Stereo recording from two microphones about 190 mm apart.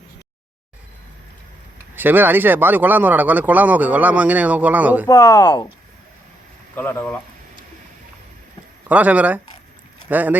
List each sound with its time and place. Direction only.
2.0 s speech: 10° right (ahead or behind)
5.0 s speech: 15° left (ahead or behind)
6.7 s speech: 10° left (ahead or behind)
8.9 s speech: 10° right (ahead or behind)